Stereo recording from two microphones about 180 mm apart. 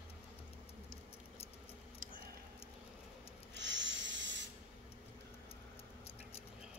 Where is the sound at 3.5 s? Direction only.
90° right.